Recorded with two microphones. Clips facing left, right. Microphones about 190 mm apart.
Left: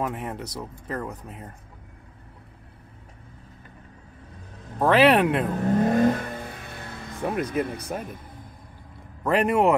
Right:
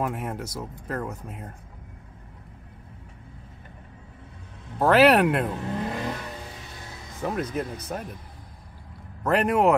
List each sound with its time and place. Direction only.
0.0 s speech: centre (ahead or behind)
4.7 s speech: 5° right (ahead or behind)
5.5 s vehicle: 45° left (ahead or behind)
7.4 s speech: 60° left (ahead or behind)
7.9 s speech: centre (ahead or behind)
9.2 s speech: centre (ahead or behind)